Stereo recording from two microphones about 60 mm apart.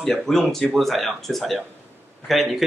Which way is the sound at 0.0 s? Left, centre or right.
Centre.